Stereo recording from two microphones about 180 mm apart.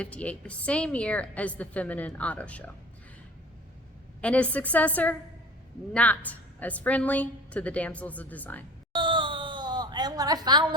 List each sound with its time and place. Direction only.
0.0 s a woman's voice: 5° left (ahead or behind)
4.2 s a woman's voice: 5° left (ahead or behind)
8.9 s a sound: 25° right (ahead or behind)